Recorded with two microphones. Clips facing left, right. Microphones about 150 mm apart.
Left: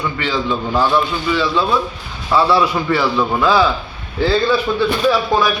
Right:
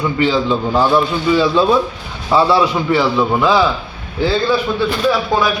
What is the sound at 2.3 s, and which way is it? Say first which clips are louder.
A man's voice: right 2 dB; 20° right (ahead or behind).